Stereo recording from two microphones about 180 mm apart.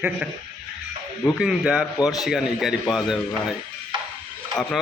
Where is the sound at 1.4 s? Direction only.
5° right (ahead or behind).